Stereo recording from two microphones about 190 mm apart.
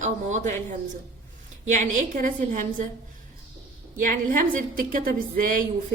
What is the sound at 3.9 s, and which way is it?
A woman's voice, 45° right (ahead or behind).